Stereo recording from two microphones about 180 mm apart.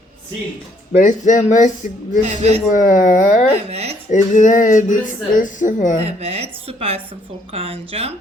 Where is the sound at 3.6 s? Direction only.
35° right (ahead or behind).